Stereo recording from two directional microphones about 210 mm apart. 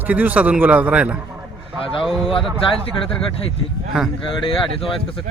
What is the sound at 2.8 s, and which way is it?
Speech, 25° left (ahead or behind).